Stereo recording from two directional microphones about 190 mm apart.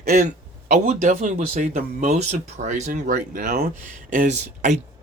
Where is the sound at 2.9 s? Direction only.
50° right (ahead or behind).